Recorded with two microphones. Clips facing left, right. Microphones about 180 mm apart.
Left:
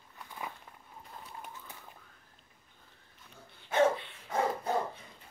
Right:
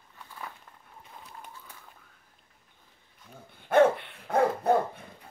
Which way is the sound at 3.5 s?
55° right (ahead or behind).